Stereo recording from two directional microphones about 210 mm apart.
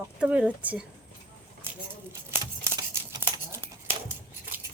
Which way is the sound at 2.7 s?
20° right (ahead or behind).